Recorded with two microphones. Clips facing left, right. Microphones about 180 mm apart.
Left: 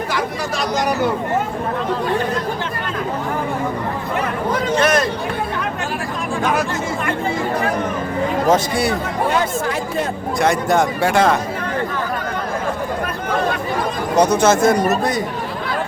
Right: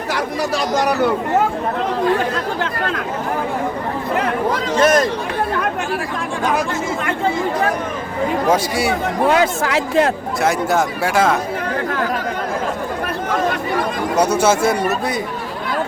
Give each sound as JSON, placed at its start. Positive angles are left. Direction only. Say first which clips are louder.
{"t": 4.8, "sound": "speech", "louder": "right 4 dB", "side_deg": -40}
{"t": 8.4, "sound": "speech", "louder": "left 2 dB", "side_deg": -10}
{"t": 9.3, "sound": "speech", "louder": "right 3 dB", "side_deg": -85}
{"t": 10.4, "sound": "speech", "louder": "left 1 dB", "side_deg": -5}
{"t": 14.2, "sound": "speech", "louder": "left 2 dB", "side_deg": -10}